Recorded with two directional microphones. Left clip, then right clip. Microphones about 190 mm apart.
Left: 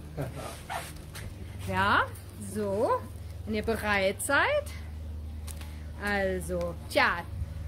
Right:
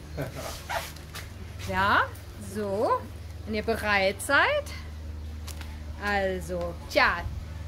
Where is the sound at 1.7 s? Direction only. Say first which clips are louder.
Right 2 dB; 30° left (ahead or behind).